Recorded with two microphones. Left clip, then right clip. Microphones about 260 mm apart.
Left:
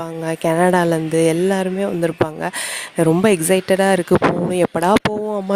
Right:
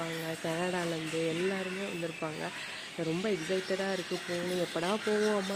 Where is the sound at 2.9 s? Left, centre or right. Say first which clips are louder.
Left 19 dB; left.